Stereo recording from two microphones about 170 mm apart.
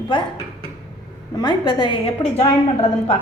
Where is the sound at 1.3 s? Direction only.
25° left (ahead or behind).